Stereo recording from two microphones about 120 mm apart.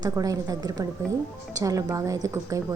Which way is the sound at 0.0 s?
30° right (ahead or behind).